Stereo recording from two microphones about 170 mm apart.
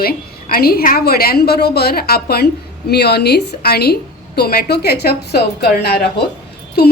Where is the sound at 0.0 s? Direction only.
60° left (ahead or behind).